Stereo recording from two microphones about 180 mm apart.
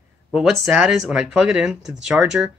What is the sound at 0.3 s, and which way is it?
Speech, 5° right (ahead or behind).